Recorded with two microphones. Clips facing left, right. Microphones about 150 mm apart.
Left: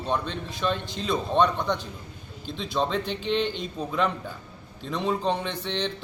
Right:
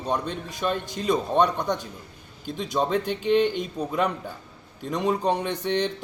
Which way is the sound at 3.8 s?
10° right (ahead or behind).